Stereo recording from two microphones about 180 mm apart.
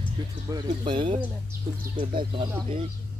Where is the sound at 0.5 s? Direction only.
25° right (ahead or behind).